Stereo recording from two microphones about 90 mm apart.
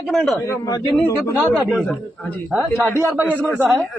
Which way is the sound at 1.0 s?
40° left (ahead or behind).